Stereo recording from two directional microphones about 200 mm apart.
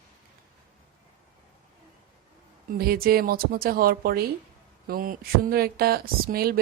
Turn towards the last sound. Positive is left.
turn(degrees=-50)  # may be behind; listen again after turning